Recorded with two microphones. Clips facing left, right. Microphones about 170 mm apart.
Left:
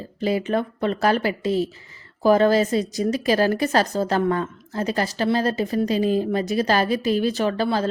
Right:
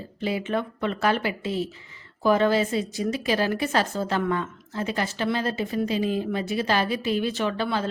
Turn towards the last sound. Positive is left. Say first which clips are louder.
# left 4 dB
turn(degrees=40)  # may be behind; listen again after turning